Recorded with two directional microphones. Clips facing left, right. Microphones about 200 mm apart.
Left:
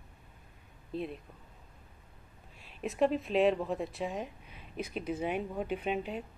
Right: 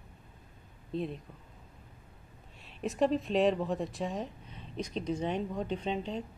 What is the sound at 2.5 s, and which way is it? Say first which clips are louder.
Speech: right 1 dB; centre (ahead or behind).